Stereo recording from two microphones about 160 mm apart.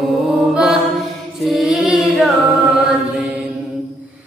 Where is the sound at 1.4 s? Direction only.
Centre (ahead or behind).